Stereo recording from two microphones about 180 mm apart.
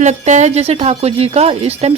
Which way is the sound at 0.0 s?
40° right (ahead or behind).